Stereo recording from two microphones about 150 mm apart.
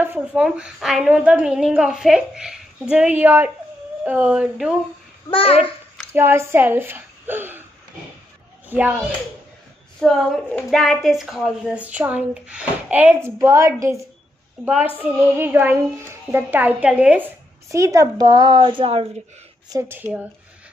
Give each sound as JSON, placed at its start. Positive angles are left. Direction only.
{"t": 0.0, "sound": "a woman's voice", "side_deg": -10}
{"t": 5.3, "sound": "a child's voice", "side_deg": 40}
{"t": 6.1, "sound": "a woman's voice", "side_deg": -15}
{"t": 8.6, "sound": "a child's voice", "side_deg": -10}
{"t": 9.9, "sound": "a woman's voice", "side_deg": 0}
{"t": 17.6, "sound": "a woman's voice", "side_deg": -20}
{"t": 19.7, "sound": "a woman's voice", "side_deg": -15}